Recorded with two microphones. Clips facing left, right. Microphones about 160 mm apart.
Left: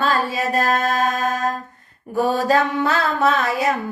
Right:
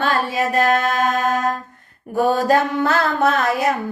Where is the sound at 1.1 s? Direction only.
55° right (ahead or behind).